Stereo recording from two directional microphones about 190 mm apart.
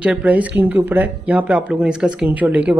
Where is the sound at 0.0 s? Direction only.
5° right (ahead or behind).